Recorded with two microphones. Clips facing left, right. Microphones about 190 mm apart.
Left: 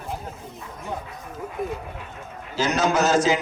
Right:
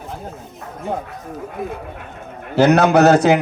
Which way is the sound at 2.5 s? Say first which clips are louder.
Right 9 dB; 60° right (ahead or behind).